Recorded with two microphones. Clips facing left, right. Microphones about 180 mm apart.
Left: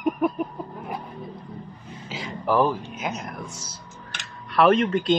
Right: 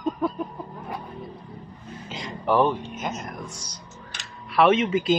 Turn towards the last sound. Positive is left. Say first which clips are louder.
# left 1 dB
turn(degrees=0)  # may be behind; listen again after turning